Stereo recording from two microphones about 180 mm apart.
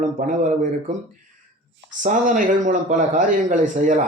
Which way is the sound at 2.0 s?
45° right (ahead or behind).